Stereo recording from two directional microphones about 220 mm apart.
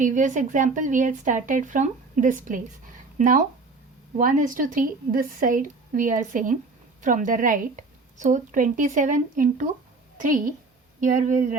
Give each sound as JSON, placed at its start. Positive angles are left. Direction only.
{"t": 0.0, "sound": "a woman's voice", "side_deg": -35}